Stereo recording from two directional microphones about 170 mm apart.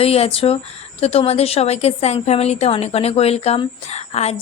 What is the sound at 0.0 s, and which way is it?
Speech, 35° left (ahead or behind).